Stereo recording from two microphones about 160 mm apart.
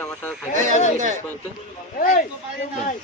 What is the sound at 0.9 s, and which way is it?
Speech, 50° right (ahead or behind).